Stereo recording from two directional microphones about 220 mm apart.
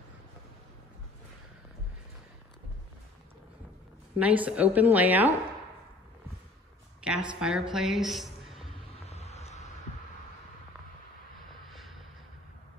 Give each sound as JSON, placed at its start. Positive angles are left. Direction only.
{"t": 4.2, "sound": "a woman's voice", "side_deg": -5}
{"t": 7.0, "sound": "a woman's voice", "side_deg": -5}
{"t": 9.0, "sound": "a sound", "side_deg": 30}